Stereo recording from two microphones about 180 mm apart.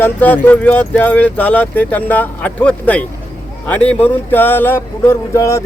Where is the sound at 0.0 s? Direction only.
10° left (ahead or behind).